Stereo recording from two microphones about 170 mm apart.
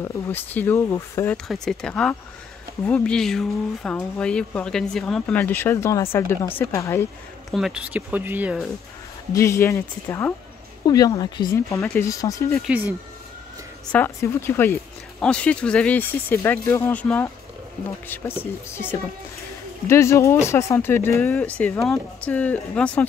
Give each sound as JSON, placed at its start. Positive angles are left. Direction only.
{"t": 0.0, "sound": "speech", "side_deg": 10}
{"t": 1.3, "sound": "speech", "side_deg": 5}
{"t": 7.5, "sound": "speech", "side_deg": -5}
{"t": 9.3, "sound": "a woman's voice", "side_deg": 15}
{"t": 12.6, "sound": "speech", "side_deg": -10}
{"t": 13.9, "sound": "speech", "side_deg": 15}